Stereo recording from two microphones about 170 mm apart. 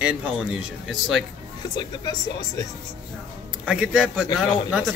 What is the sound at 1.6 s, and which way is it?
Speech, 25° left (ahead or behind).